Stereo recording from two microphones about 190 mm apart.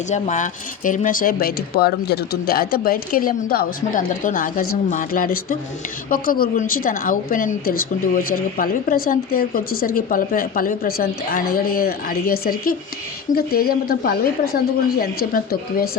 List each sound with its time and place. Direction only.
0.1 s a woman's voice: 40° left (ahead or behind)